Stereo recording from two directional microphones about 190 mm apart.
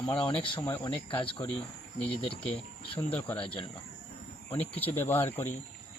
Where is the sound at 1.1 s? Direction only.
25° left (ahead or behind).